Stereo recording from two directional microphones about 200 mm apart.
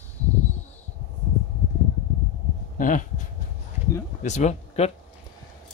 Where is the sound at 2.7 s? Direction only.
40° left (ahead or behind).